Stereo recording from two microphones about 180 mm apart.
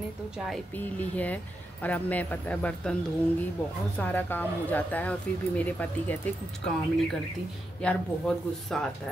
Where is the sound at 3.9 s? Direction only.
10° left (ahead or behind).